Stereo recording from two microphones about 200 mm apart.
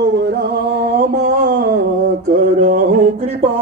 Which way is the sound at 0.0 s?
60° right (ahead or behind).